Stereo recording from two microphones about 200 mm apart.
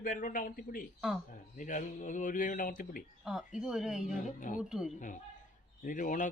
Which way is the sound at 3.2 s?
Centre (ahead or behind).